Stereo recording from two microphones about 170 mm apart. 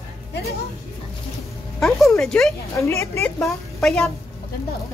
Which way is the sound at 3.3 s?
5° left (ahead or behind).